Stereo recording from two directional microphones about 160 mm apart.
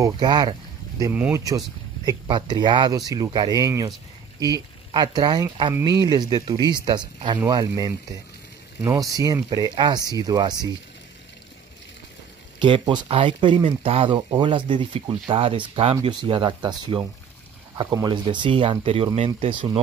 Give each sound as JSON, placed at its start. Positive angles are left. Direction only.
{"t": 0.0, "sound": "speech", "side_deg": -25}
{"t": 1.1, "sound": "speech", "side_deg": -10}
{"t": 2.0, "sound": "speech", "side_deg": -30}
{"t": 12.5, "sound": "speech", "side_deg": -30}